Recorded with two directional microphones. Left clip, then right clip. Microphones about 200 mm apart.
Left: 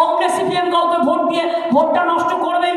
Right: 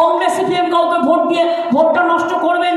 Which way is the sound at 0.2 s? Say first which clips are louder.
Right 2 dB; 25° left (ahead or behind).